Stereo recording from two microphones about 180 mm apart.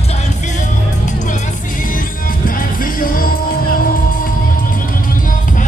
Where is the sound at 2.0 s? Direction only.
50° left (ahead or behind).